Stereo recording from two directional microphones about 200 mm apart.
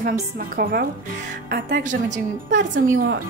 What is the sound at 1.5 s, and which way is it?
Speech, 55° right (ahead or behind).